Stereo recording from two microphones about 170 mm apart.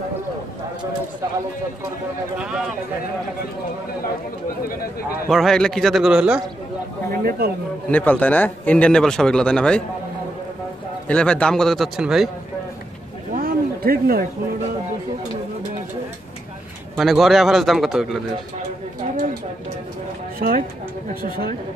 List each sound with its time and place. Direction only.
2.3 s speech: 5° right (ahead or behind)
5.3 s speech: centre (ahead or behind)
7.1 s speech: 65° right (ahead or behind)
7.9 s speech: 10° left (ahead or behind)
11.1 s speech: 5° left (ahead or behind)
13.3 s a sound: 60° right (ahead or behind)
16.9 s speech: centre (ahead or behind)
20.3 s speech: 60° right (ahead or behind)